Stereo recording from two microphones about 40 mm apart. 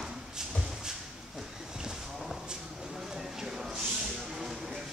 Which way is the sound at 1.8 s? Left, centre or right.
Centre.